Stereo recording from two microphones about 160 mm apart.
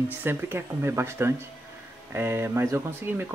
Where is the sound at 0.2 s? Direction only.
15° right (ahead or behind).